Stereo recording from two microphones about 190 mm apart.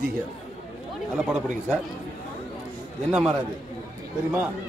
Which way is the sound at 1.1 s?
5° right (ahead or behind).